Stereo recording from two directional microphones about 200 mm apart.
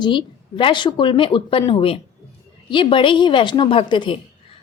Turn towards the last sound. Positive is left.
turn(degrees=25)  # may be behind; listen again after turning